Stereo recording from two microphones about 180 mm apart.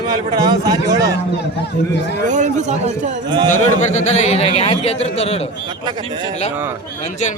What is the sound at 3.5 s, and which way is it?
A man's voice, 40° left (ahead or behind).